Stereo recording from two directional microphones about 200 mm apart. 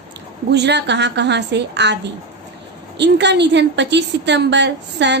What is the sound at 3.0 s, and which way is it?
A woman's voice, 60° right (ahead or behind).